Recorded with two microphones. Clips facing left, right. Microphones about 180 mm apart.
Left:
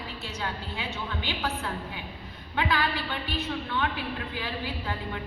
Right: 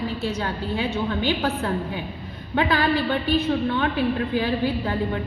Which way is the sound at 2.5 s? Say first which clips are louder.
Right 7 dB; 30° right (ahead or behind).